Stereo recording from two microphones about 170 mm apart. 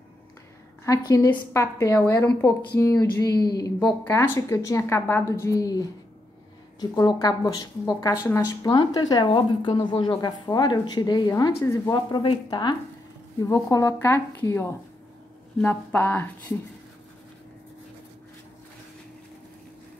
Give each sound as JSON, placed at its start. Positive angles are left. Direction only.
{"t": 0.8, "sound": "a woman's voice", "side_deg": 20}
{"t": 12.1, "sound": "a woman's voice", "side_deg": 25}